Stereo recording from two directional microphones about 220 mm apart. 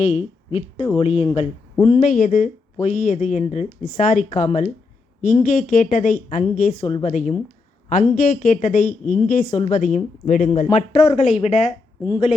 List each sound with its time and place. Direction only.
0.0 s speech: 30° left (ahead or behind)
2.0 s a woman's voice: 35° left (ahead or behind)
12.0 s a woman's voice: 15° left (ahead or behind)